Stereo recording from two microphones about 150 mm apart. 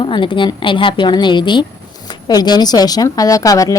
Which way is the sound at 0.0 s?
35° left (ahead or behind).